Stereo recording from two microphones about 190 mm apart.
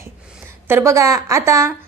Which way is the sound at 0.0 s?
10° right (ahead or behind).